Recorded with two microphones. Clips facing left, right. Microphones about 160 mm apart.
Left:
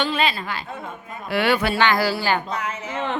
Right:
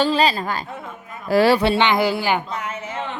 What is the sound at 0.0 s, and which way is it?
A woman's voice, 35° right (ahead or behind).